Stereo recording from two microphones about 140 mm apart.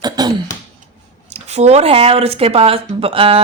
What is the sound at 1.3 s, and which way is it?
Speech, 50° right (ahead or behind).